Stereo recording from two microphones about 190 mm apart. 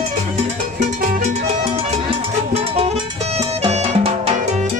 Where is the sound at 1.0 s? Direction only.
40° right (ahead or behind).